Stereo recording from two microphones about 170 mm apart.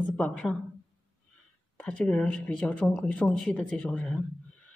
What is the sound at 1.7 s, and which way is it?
A woman's voice, 5° left (ahead or behind).